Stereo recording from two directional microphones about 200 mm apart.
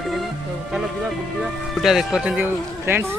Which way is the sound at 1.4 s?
Centre (ahead or behind).